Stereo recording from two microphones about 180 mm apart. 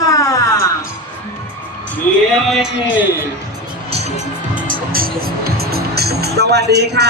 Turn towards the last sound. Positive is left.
turn(degrees=-65)  # may be behind; listen again after turning